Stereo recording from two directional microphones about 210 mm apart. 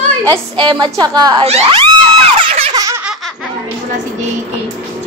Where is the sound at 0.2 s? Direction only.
20° right (ahead or behind).